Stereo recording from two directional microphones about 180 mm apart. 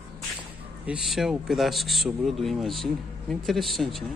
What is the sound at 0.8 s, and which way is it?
Speech, centre (ahead or behind).